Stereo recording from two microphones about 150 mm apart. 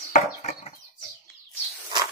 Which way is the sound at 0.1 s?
50° left (ahead or behind).